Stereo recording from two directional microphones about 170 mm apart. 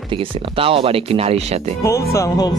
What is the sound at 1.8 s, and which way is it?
Speech, 15° left (ahead or behind).